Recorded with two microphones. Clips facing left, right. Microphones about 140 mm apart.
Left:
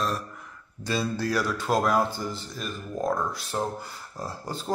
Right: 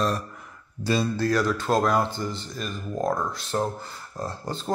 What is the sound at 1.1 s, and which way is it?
A man's voice, 10° left (ahead or behind).